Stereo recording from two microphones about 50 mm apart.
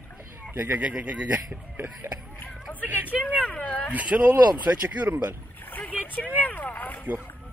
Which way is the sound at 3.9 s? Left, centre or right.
Right.